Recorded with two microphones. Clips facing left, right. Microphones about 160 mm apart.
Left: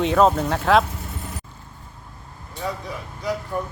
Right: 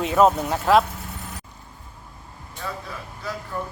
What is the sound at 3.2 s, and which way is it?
Speech, 15° left (ahead or behind).